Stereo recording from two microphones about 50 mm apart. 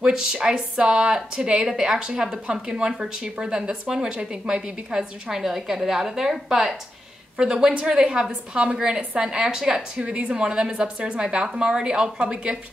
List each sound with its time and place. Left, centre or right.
0.3 s a woman's voice: centre